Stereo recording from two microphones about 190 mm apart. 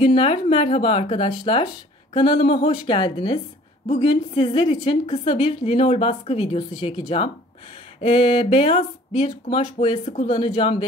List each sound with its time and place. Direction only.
0.0 s speech: 30° left (ahead or behind)